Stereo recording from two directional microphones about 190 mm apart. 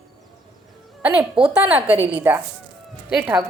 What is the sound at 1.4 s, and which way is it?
A woman's voice, 10° right (ahead or behind).